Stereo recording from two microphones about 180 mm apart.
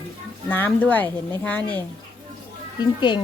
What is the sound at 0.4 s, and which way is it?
Speech, 10° left (ahead or behind).